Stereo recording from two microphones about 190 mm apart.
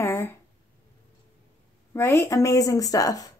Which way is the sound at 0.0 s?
15° left (ahead or behind).